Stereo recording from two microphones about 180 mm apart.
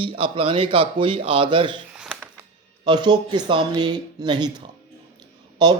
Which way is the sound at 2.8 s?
25° right (ahead or behind).